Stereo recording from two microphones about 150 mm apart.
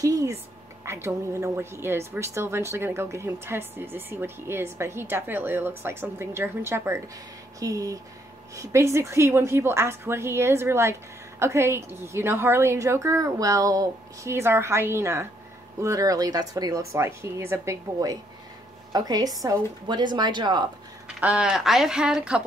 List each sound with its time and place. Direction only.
0.0 s a woman's voice: 25° right (ahead or behind)
21.2 s speech: 5° right (ahead or behind)